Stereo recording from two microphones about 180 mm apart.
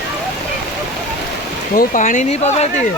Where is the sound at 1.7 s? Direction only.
45° left (ahead or behind).